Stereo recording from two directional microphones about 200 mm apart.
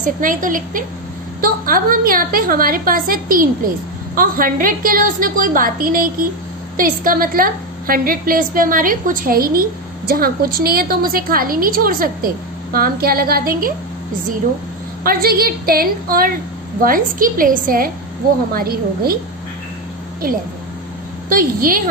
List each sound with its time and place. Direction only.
0.0 s a woman's voice: 40° right (ahead or behind)
15.0 s a woman's voice: 50° right (ahead or behind)
20.2 s a woman's voice: 45° right (ahead or behind)